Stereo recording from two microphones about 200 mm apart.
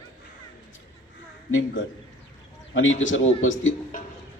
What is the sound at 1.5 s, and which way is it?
A man's voice, 80° left.